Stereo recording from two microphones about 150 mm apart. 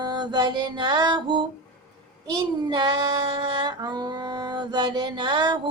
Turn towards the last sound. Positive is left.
turn(degrees=-30)  # may be behind; listen again after turning